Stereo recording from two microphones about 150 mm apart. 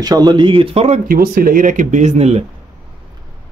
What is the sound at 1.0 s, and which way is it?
Speech, 75° right (ahead or behind).